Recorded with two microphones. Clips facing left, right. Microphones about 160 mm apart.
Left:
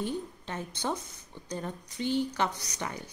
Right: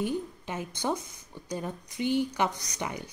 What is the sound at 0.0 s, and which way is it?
A woman's voice, 10° right (ahead or behind).